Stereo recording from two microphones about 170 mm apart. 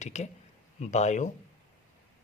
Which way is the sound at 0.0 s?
40° left (ahead or behind).